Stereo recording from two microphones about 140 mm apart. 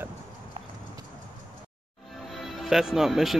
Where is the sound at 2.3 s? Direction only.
Centre (ahead or behind).